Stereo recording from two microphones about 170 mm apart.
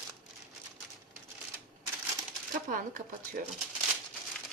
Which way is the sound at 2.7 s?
55° right (ahead or behind).